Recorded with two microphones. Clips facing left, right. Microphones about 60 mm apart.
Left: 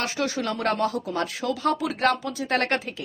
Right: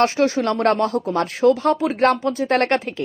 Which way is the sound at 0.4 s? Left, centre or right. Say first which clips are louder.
Right 6 dB; right.